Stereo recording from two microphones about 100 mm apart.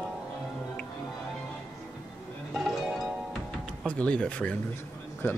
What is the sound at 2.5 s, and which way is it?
Music, centre (ahead or behind).